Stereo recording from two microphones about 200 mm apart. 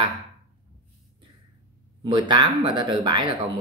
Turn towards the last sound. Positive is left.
turn(degrees=-25)  # may be behind; listen again after turning